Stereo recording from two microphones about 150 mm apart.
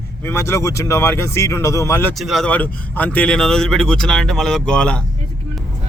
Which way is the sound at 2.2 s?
Centre (ahead or behind).